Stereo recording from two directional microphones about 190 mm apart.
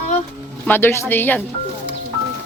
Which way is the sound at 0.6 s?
10° left (ahead or behind).